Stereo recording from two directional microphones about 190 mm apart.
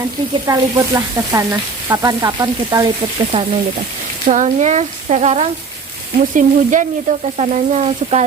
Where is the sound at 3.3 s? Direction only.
30° right (ahead or behind).